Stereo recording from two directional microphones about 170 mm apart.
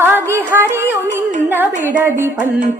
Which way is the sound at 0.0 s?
15° right (ahead or behind).